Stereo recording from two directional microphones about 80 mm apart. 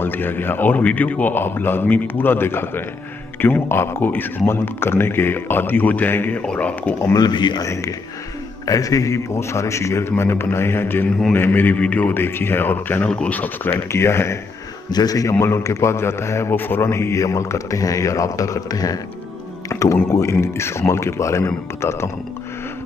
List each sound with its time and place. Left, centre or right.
0.0 s speech: left
7.2 s a man's voice: left
7.6 s a man's voice: left; by 13.7 s centre
13.9 s a man's voice: left
14.9 s a man's voice: left
15.3 s a man's voice: left